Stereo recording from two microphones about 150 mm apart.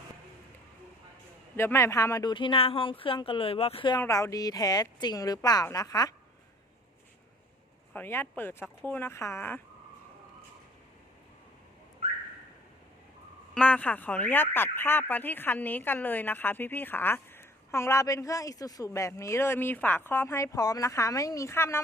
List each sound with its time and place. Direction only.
1.5 s speech: 15° left (ahead or behind); by 4.0 s 35° left (ahead or behind)
4.0 s speech: 20° left (ahead or behind)
7.9 s speech: 15° left (ahead or behind)
13.5 s speech: 10° left (ahead or behind)